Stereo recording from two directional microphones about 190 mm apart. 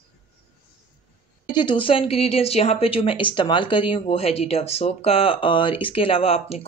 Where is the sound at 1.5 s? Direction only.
25° left (ahead or behind).